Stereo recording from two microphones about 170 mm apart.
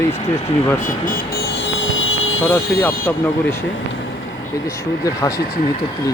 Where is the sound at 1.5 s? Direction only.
90° left.